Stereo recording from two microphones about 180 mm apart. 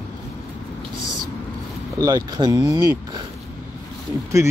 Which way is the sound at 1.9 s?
20° right (ahead or behind).